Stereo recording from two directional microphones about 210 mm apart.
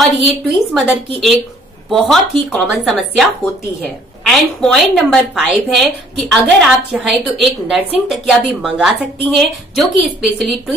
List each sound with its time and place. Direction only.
0.0 s a woman's voice: centre (ahead or behind)
4.3 s a woman's voice: centre (ahead or behind)